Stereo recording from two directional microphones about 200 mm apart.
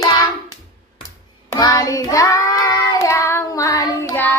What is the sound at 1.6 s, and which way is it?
Child singing, 15° left (ahead or behind).